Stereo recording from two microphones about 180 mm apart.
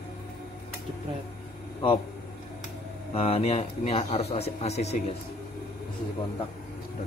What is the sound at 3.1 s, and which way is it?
A man's voice, 35° left (ahead or behind).